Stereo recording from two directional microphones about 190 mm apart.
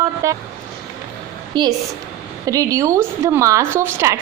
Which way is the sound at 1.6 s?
25° right (ahead or behind).